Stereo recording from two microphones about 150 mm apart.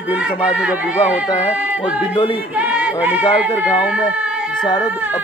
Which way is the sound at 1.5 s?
10° right (ahead or behind).